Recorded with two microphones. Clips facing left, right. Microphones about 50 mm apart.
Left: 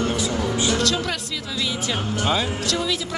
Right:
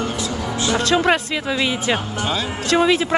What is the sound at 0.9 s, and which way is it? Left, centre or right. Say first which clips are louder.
Speech: right 9 dB; right.